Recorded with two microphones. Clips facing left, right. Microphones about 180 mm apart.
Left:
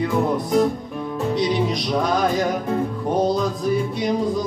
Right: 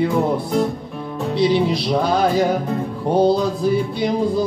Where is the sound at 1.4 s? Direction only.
30° right (ahead or behind).